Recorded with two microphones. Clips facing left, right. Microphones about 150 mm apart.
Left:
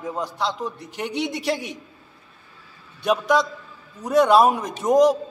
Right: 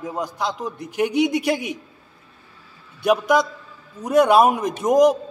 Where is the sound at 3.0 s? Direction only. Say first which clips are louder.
Right 2 dB; 10° right (ahead or behind).